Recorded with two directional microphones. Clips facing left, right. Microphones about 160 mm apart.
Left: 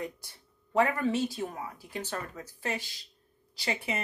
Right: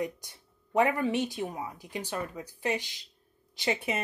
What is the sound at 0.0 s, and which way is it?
Speech, 20° right (ahead or behind).